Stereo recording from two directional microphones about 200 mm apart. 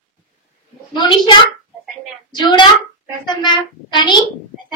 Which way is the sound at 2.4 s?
20° left (ahead or behind).